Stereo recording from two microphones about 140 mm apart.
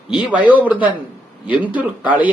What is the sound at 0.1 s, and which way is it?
Speech, 10° right (ahead or behind).